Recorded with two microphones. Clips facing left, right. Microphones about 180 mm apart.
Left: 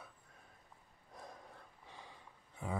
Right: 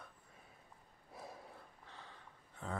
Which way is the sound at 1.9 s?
15° left (ahead or behind).